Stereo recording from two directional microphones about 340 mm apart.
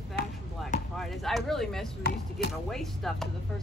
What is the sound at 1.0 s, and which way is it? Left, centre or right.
Speech, centre.